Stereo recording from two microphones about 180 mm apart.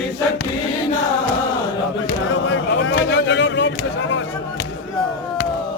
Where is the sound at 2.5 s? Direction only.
85° left.